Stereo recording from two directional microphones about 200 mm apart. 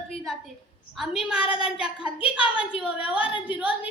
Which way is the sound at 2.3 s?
5° right (ahead or behind).